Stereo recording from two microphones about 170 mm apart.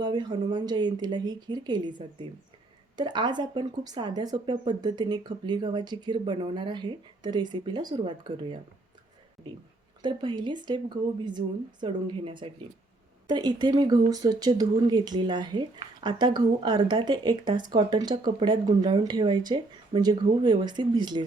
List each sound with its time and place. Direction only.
0.0 s speech: 25° right (ahead or behind)
10.0 s speech: 25° right (ahead or behind)